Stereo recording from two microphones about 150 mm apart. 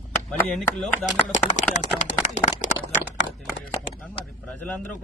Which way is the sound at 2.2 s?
55° left (ahead or behind).